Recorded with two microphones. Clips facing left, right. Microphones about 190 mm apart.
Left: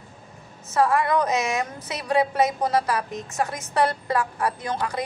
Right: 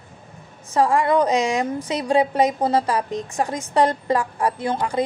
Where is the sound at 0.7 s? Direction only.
30° right (ahead or behind).